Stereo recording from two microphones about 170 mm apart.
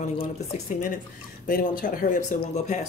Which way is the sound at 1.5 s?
55° left (ahead or behind).